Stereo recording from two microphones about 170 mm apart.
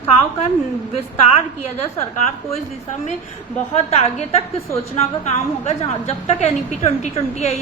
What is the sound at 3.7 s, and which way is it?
Speech, 40° left (ahead or behind).